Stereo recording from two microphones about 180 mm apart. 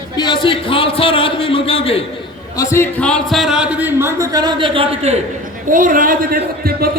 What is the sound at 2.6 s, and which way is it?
Speech, 15° left (ahead or behind).